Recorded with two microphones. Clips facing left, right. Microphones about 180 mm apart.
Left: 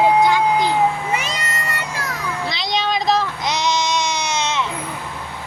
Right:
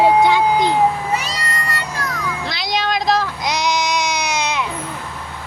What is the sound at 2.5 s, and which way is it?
Child singing, 5° right (ahead or behind).